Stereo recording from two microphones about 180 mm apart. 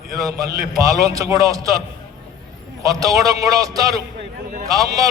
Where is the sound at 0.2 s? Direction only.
20° right (ahead or behind).